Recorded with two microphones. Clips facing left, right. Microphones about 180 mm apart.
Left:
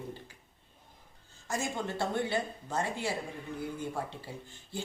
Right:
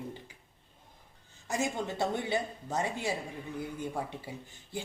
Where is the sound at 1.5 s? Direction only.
15° right (ahead or behind).